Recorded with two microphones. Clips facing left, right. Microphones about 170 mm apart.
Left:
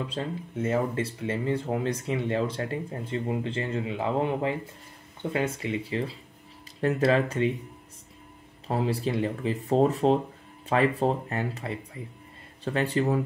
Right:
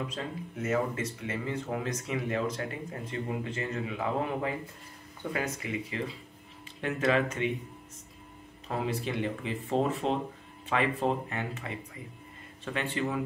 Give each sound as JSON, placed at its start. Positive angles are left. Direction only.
{"t": 0.1, "sound": "speech", "side_deg": 30}
{"t": 8.6, "sound": "speech", "side_deg": 30}